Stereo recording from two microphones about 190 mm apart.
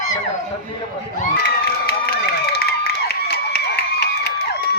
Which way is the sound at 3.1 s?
55° left (ahead or behind).